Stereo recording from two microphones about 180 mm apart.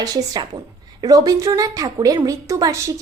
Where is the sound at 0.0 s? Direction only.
20° right (ahead or behind).